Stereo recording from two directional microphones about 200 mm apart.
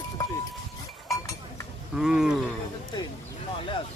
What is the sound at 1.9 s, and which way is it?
Speech, 5° right (ahead or behind).